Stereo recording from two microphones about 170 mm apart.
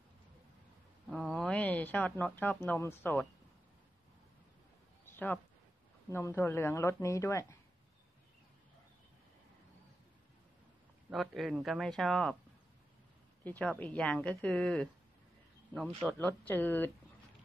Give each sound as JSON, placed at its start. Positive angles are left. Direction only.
{"t": 1.1, "sound": "a sound", "side_deg": 5}
{"t": 2.8, "sound": "a woman's voice", "side_deg": 15}
{"t": 5.0, "sound": "a sound", "side_deg": 10}
{"t": 6.1, "sound": "a woman's voice", "side_deg": 15}
{"t": 11.1, "sound": "speech", "side_deg": 0}
{"t": 13.4, "sound": "a woman's voice", "side_deg": 10}
{"t": 16.0, "sound": "a woman's voice", "side_deg": 5}